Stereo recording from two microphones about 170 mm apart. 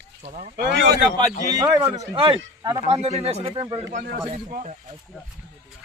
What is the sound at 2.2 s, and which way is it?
Speech, 30° right (ahead or behind).